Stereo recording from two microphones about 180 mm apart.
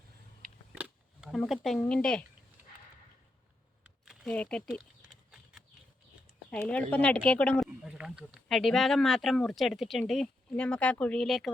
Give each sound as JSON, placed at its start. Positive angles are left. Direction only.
{"t": 0.7, "sound": "a sound", "side_deg": -5}
{"t": 3.8, "sound": "typing", "side_deg": -5}
{"t": 6.5, "sound": "speech", "side_deg": 5}
{"t": 7.9, "sound": "speech", "side_deg": -5}